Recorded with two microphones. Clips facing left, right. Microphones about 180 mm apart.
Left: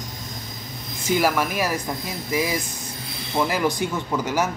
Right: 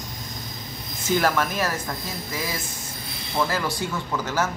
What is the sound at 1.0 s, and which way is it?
A man's voice, 10° left (ahead or behind).